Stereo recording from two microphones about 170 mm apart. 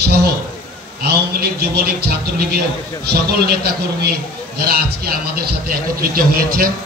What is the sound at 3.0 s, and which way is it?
A man's voice, 65° right (ahead or behind).